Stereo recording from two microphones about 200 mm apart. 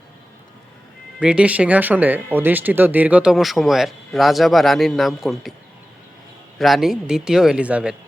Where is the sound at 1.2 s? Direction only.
5° right (ahead or behind).